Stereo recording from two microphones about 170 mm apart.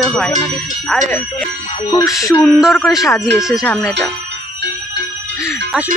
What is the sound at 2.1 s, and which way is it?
Speech, centre (ahead or behind).